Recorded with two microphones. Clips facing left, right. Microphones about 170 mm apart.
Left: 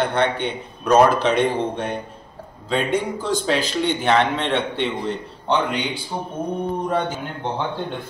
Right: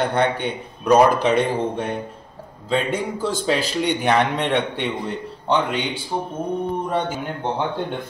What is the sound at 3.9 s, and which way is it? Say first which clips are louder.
A man's voice: even; 15° right (ahead or behind).